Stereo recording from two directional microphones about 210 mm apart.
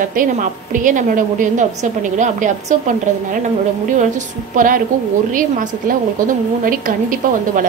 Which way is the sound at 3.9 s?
35° right (ahead or behind).